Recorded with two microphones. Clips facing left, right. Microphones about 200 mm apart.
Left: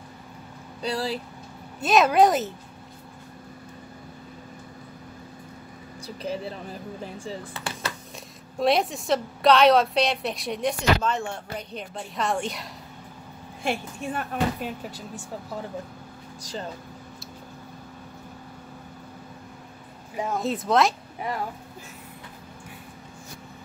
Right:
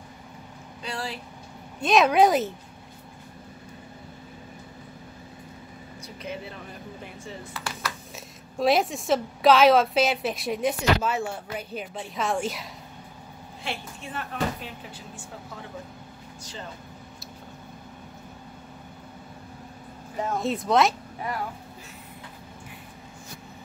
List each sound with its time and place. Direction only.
0.8 s speech: 35° left (ahead or behind)
1.8 s a woman's voice: 5° left (ahead or behind)
6.0 s speech: 35° left (ahead or behind)
8.5 s a woman's voice: centre (ahead or behind)
13.7 s speech: 50° left (ahead or behind)
20.3 s a woman's voice: centre (ahead or behind)